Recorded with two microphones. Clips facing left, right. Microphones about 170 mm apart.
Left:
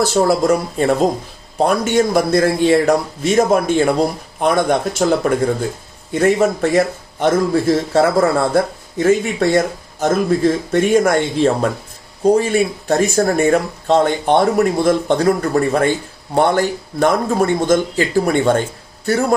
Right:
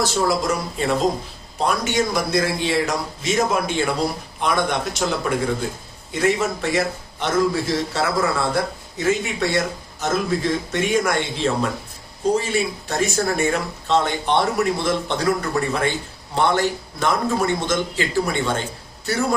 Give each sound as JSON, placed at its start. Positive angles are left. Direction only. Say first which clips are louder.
{"t": 0.0, "sound": "a man's voice", "louder": "left 6 dB", "side_deg": 50}